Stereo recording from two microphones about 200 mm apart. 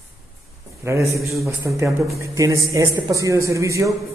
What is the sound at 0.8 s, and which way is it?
A man's voice, 15° right (ahead or behind).